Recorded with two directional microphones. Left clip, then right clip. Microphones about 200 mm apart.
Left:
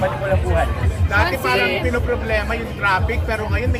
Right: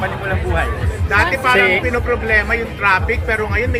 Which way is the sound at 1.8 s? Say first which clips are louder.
Right 4 dB; 25° right (ahead or behind).